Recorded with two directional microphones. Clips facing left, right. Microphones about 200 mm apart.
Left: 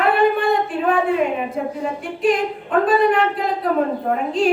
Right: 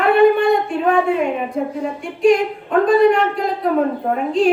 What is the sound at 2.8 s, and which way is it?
A man's voice, centre (ahead or behind).